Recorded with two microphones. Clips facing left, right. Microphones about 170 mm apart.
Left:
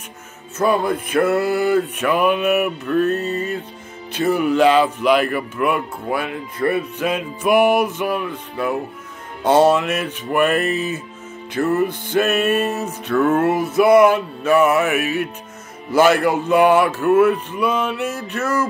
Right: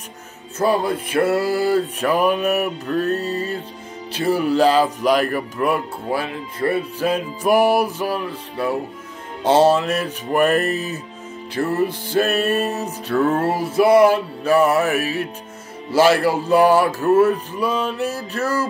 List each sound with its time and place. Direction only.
0.6 s speech: 30° right (ahead or behind)